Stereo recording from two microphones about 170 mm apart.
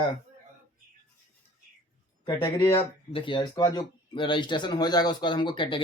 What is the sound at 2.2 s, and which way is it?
Speech, 20° left (ahead or behind).